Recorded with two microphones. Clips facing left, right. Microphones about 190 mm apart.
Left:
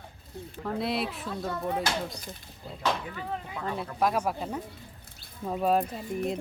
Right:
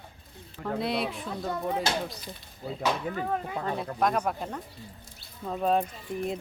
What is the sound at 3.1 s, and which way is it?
Speech, 45° right (ahead or behind).